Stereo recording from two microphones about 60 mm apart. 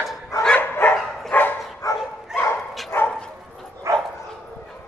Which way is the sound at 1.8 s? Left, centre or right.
Left.